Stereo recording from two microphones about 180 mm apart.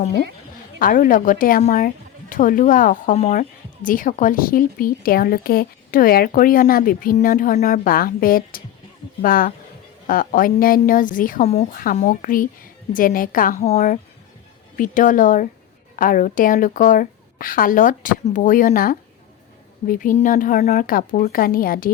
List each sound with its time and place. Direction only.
0.8 s a woman's voice: 50° left (ahead or behind)